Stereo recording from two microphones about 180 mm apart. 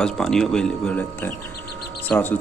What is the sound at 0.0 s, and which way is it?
A man's voice, 5° left (ahead or behind).